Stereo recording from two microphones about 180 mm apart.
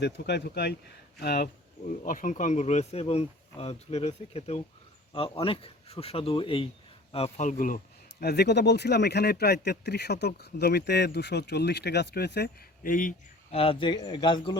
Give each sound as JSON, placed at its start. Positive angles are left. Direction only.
{"t": 0.0, "sound": "speech", "side_deg": 70}
{"t": 2.0, "sound": "a man's voice", "side_deg": 45}
{"t": 8.2, "sound": "speech", "side_deg": 65}
{"t": 13.5, "sound": "speech", "side_deg": 30}